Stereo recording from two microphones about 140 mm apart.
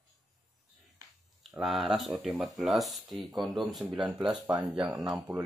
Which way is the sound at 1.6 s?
Centre (ahead or behind).